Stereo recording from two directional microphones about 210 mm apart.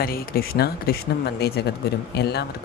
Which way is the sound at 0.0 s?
45° left (ahead or behind).